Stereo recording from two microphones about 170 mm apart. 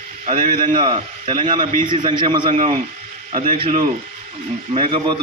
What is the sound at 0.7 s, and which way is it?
A man's voice, 30° right (ahead or behind).